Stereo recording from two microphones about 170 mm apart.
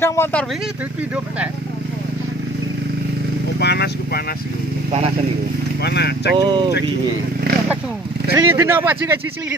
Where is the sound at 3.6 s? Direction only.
75° left (ahead or behind).